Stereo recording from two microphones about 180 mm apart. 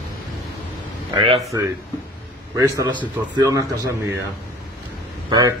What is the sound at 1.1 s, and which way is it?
Speech, 30° right (ahead or behind).